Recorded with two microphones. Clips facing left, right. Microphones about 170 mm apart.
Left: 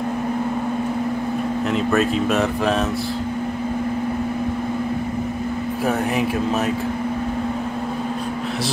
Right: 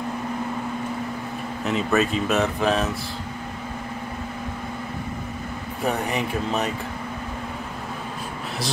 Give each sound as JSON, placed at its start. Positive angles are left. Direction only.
{"t": 1.7, "sound": "speech", "side_deg": 0}
{"t": 5.9, "sound": "speech", "side_deg": 0}